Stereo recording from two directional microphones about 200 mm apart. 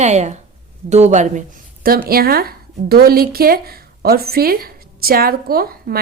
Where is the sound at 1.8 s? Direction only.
50° right (ahead or behind).